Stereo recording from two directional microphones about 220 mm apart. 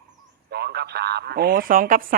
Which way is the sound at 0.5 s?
45° right (ahead or behind).